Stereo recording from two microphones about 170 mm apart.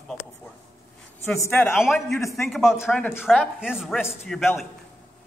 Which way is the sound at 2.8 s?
10° left (ahead or behind).